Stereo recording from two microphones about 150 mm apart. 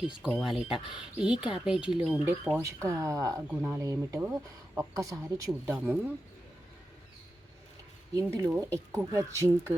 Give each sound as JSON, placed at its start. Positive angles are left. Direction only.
{"t": 0.3, "sound": "speech", "side_deg": 0}
{"t": 2.2, "sound": "speech", "side_deg": -15}
{"t": 3.5, "sound": "speech", "side_deg": -10}
{"t": 3.8, "sound": "speech", "side_deg": -20}
{"t": 8.1, "sound": "speech", "side_deg": -20}